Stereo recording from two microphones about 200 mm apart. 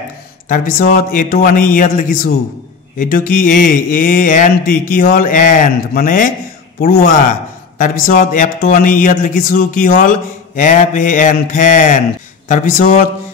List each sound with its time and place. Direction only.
0.5 s speech: 40° left (ahead or behind)